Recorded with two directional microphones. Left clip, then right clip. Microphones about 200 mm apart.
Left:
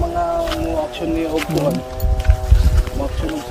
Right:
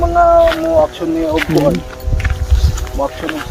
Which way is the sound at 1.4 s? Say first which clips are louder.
Right 8 dB; centre (ahead or behind).